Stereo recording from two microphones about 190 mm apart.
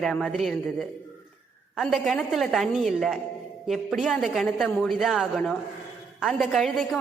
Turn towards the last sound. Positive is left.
turn(degrees=0)  # may be behind; listen again after turning